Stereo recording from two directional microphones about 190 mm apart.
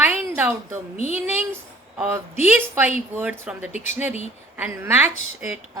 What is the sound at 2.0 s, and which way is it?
A woman's voice, 10° right (ahead or behind).